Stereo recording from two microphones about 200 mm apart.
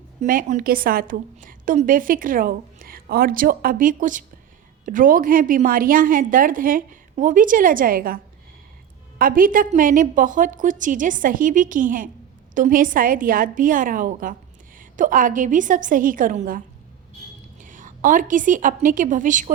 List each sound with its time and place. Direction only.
0.2 s a woman's voice: 40° right (ahead or behind)